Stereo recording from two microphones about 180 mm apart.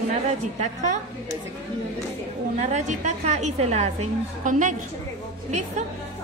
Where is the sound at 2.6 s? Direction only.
40° right (ahead or behind).